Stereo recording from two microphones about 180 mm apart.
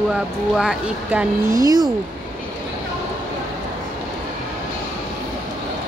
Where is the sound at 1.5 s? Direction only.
20° right (ahead or behind).